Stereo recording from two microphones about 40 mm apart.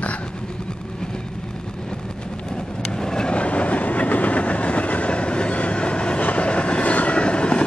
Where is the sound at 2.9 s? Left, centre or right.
Centre.